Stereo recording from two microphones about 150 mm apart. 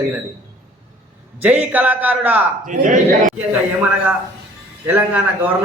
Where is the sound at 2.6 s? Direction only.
60° right (ahead or behind).